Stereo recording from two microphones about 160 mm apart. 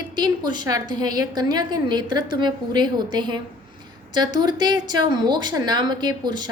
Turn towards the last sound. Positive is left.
turn(degrees=-25)  # may be behind; listen again after turning